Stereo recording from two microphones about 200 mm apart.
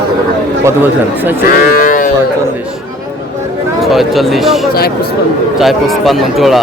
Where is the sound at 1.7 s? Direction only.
45° left (ahead or behind).